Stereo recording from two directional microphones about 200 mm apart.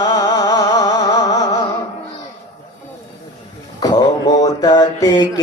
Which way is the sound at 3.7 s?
20° left (ahead or behind).